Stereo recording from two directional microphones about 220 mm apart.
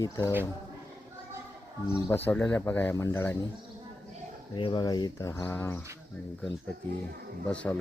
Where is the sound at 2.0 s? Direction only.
10° left (ahead or behind).